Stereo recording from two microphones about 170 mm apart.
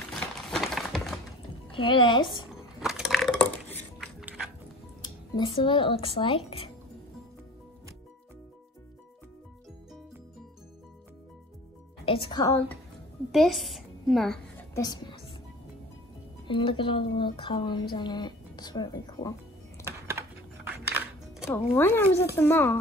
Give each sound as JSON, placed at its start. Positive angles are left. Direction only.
{"t": 0.1, "sound": "a sound", "side_deg": 0}
{"t": 1.7, "sound": "a woman's voice", "side_deg": 30}
{"t": 2.8, "sound": "a sound", "side_deg": 0}
{"t": 5.3, "sound": "speech", "side_deg": 30}
{"t": 12.1, "sound": "a woman's voice", "side_deg": 30}
{"t": 13.3, "sound": "a woman's voice", "side_deg": 0}
{"t": 14.7, "sound": "a woman's voice", "side_deg": 20}
{"t": 16.4, "sound": "a woman's voice", "side_deg": 30}
{"t": 19.8, "sound": "music", "side_deg": -15}
{"t": 21.7, "sound": "speech", "side_deg": 15}